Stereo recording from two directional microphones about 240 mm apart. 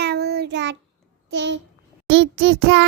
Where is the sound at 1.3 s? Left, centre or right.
Right.